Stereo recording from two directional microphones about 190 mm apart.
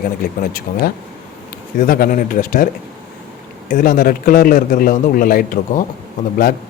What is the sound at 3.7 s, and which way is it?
A man's voice, 50° left (ahead or behind).